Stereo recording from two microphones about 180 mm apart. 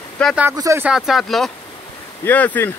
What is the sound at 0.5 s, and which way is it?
Speech, 20° right (ahead or behind).